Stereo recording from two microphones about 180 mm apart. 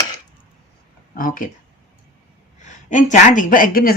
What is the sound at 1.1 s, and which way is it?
Speech, 50° left (ahead or behind).